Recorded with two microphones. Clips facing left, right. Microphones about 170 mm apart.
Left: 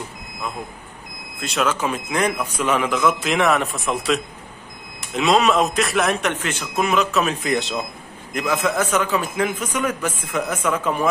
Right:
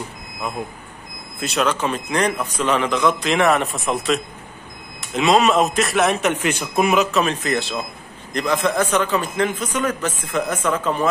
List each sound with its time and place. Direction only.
1.4 s a man's voice: centre (ahead or behind)
6.3 s a man's voice: 15° right (ahead or behind)
7.1 s a man's voice: 5° left (ahead or behind)